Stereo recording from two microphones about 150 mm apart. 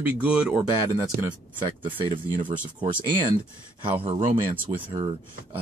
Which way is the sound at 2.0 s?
35° right (ahead or behind).